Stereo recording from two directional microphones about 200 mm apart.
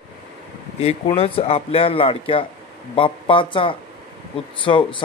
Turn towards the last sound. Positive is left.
turn(degrees=25)  # may be behind; listen again after turning